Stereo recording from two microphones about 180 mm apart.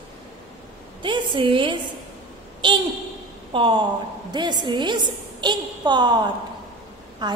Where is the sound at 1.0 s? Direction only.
25° right (ahead or behind).